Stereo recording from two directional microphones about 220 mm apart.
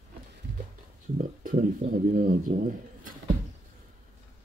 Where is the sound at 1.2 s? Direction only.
40° right (ahead or behind).